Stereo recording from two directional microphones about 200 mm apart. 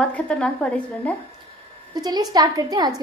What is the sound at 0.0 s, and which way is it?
A woman's voice, 5° left (ahead or behind).